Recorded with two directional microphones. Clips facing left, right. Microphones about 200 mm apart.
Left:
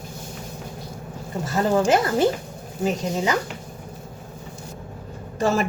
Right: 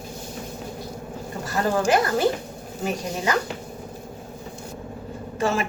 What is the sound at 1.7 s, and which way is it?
Speech, 25° left (ahead or behind).